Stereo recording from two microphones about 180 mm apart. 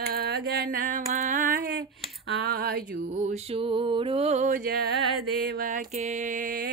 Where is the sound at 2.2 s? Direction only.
70° right (ahead or behind).